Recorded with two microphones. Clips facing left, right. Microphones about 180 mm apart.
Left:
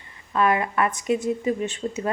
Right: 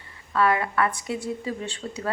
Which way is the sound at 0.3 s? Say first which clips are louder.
Left 1 dB; 20° left (ahead or behind).